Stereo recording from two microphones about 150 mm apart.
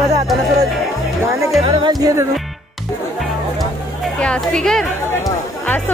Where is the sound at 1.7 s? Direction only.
30° right (ahead or behind).